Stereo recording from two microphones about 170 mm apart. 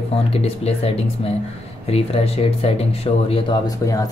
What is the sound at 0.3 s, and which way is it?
Speech, 35° left (ahead or behind).